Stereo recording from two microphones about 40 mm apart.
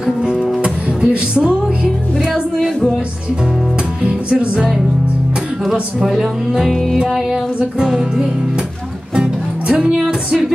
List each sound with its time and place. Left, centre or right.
0.0 s music: centre
0.6 s music: right
4.0 s music: right
5.7 s speech: centre
6.7 s music: centre
7.1 s speech: centre
7.8 s music: right
9.1 s music: centre